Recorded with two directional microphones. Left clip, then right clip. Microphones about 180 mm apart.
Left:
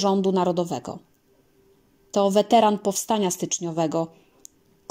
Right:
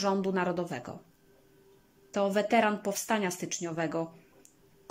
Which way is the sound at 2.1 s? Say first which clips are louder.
Left 8 dB; 25° left (ahead or behind).